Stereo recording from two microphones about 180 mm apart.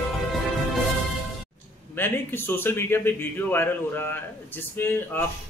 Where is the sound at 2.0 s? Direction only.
10° left (ahead or behind).